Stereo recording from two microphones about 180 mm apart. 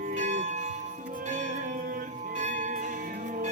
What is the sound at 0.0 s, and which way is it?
Church bell, 40° right (ahead or behind).